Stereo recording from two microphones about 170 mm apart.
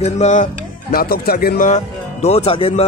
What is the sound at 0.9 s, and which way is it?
Speech, 60° left (ahead or behind).